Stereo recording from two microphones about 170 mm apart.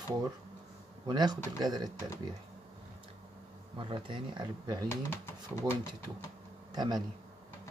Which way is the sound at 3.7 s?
30° right (ahead or behind).